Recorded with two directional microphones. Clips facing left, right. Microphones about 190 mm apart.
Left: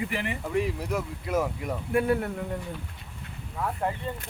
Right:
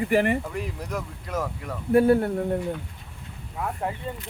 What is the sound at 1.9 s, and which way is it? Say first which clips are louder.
Speech: right 7 dB; 35° right (ahead or behind).